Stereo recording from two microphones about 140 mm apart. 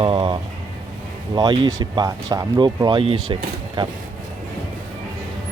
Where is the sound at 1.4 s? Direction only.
30° right (ahead or behind).